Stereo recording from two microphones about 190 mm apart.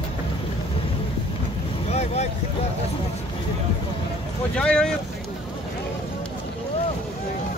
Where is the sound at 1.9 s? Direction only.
35° left (ahead or behind).